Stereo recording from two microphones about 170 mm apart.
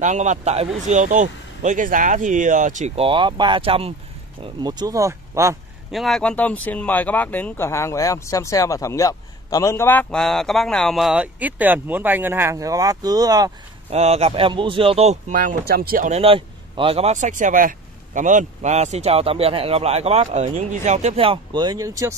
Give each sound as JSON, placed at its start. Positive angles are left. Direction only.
{"t": 0.0, "sound": "speech", "side_deg": -45}
{"t": 3.0, "sound": "speech", "side_deg": -30}
{"t": 4.6, "sound": "speech", "side_deg": -20}
{"t": 5.9, "sound": "speech", "side_deg": 0}
{"t": 13.8, "sound": "speech", "side_deg": -40}
{"t": 16.1, "sound": "speech", "side_deg": -35}